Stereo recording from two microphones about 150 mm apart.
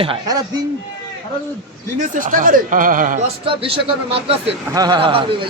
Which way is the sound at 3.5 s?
40° right (ahead or behind).